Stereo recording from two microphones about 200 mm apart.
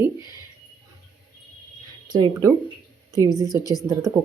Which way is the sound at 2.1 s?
20° right (ahead or behind).